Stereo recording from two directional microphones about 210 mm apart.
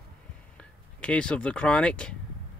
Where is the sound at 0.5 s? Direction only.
5° left (ahead or behind).